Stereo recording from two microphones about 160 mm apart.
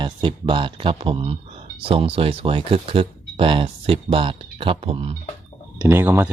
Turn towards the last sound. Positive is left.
turn(degrees=-15)  # may be behind; listen again after turning